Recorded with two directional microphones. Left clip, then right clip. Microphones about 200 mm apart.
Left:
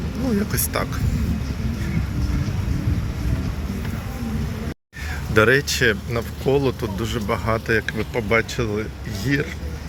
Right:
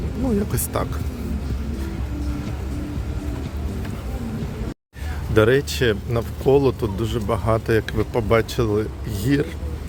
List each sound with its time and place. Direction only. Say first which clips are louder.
0.3 s speech: even; 15° right (ahead or behind)
5.3 s speech: left 1 dB; 15° right (ahead or behind)